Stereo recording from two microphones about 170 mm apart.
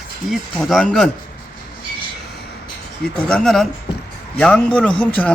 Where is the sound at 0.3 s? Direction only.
Centre (ahead or behind).